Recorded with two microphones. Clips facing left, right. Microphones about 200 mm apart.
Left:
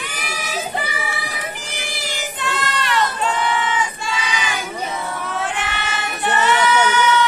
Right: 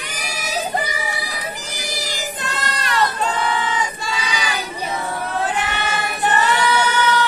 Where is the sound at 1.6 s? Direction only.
40° right (ahead or behind).